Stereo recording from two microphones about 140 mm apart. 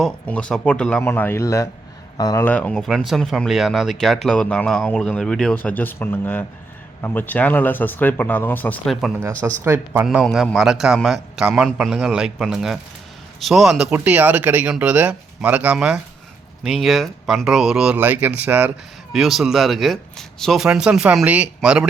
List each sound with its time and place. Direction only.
0.0 s speech: 10° left (ahead or behind); by 2.4 s 25° left (ahead or behind)
2.4 s speech: 10° left (ahead or behind)
8.9 s speech: centre (ahead or behind)
9.6 s speech: 15° right (ahead or behind)
10.2 s speech: 5° left (ahead or behind); by 18.7 s 10° right (ahead or behind)
19.1 s speech: centre (ahead or behind)